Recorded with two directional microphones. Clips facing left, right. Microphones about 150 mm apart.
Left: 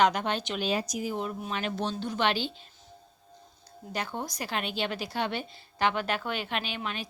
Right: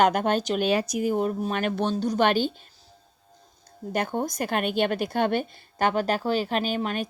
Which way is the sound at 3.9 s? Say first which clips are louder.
Right 7 dB; 50° right (ahead or behind).